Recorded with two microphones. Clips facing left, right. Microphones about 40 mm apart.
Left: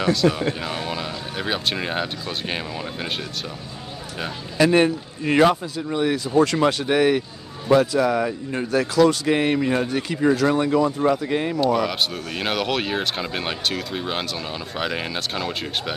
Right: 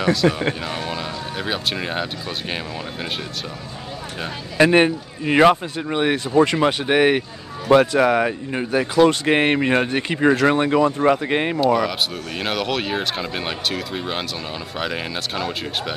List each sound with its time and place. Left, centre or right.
0.0 s speech: centre
4.6 s speech: right
6.4 s speech: right
8.5 s speech: right
9.0 s speech: right
11.9 s speech: centre